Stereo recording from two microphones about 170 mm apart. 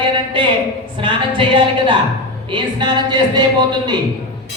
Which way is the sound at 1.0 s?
35° right (ahead or behind).